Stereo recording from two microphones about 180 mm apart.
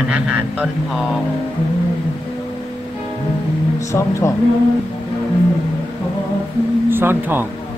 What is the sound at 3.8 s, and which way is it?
Speech, 15° left (ahead or behind).